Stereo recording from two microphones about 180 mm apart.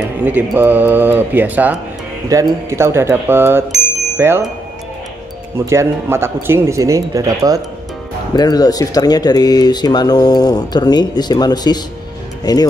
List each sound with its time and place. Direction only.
0.2 s speech: 10° right (ahead or behind)
5.7 s speech: 15° right (ahead or behind)
8.4 s speech: 20° left (ahead or behind)